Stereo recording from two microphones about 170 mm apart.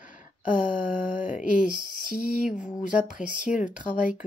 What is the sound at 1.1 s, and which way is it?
Speech, 50° left (ahead or behind).